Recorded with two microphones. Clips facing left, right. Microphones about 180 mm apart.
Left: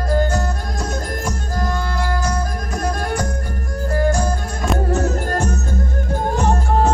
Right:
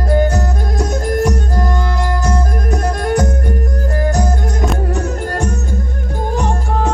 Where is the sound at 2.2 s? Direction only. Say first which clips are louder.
Right 4 dB; 20° right (ahead or behind).